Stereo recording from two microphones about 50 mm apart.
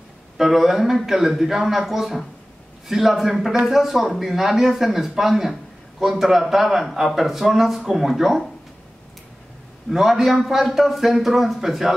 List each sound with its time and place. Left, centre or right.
0.4 s a man's voice: centre
9.8 s speech: centre